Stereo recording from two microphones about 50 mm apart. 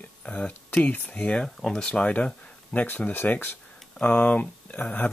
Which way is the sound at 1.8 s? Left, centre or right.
Left.